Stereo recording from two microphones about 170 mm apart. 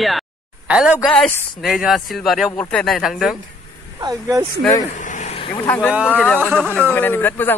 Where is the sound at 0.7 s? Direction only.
5° right (ahead or behind).